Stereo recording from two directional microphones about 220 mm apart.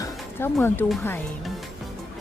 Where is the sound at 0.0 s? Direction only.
10° left (ahead or behind).